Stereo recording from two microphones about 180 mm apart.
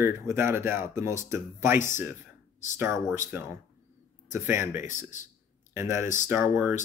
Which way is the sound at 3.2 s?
10° right (ahead or behind).